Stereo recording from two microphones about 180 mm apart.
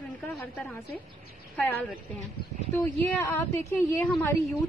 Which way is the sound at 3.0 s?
15° left (ahead or behind).